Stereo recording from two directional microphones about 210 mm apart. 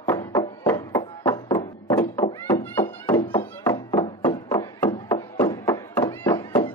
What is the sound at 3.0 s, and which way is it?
Music, 10° left (ahead or behind).